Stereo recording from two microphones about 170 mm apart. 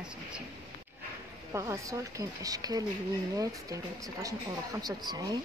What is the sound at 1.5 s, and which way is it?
Speech, 15° right (ahead or behind).